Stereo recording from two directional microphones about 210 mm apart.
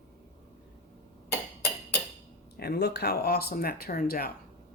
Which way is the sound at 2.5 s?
50° left (ahead or behind).